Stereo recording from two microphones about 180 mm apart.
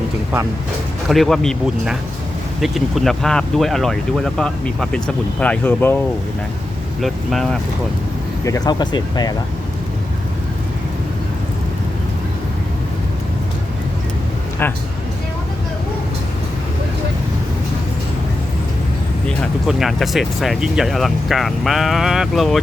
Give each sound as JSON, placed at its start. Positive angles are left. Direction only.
{"t": 1.0, "sound": "speech", "side_deg": 0}
{"t": 7.0, "sound": "speech", "side_deg": 0}
{"t": 8.4, "sound": "speech", "side_deg": 20}
{"t": 14.6, "sound": "speech", "side_deg": 10}
{"t": 19.4, "sound": "speech", "side_deg": 0}